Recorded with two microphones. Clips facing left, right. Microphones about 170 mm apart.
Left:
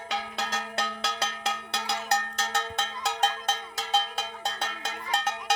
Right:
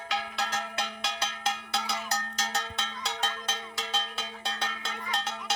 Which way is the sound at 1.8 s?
60° left (ahead or behind).